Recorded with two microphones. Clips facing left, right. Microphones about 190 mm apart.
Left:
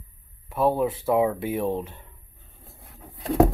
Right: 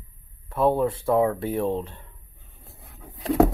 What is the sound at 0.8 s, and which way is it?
Speech, 5° left (ahead or behind).